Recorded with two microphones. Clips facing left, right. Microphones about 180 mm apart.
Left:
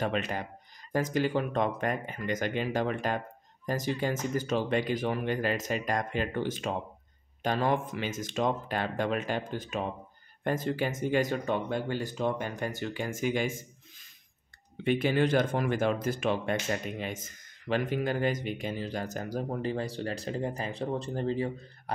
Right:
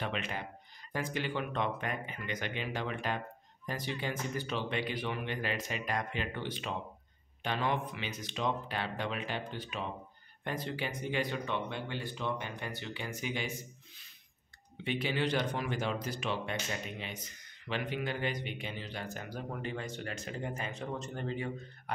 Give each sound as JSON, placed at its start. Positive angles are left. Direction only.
{"t": 0.0, "sound": "speech", "side_deg": 45}
{"t": 14.8, "sound": "speech", "side_deg": 50}